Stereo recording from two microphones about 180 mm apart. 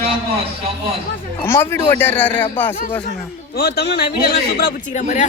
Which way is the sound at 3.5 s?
60° left (ahead or behind).